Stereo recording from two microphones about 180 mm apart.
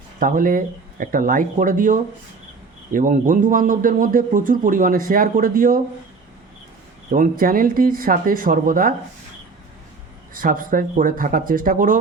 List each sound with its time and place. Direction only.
0.2 s speech: 50° right (ahead or behind)
7.1 s speech: 50° right (ahead or behind)
10.3 s speech: 50° right (ahead or behind)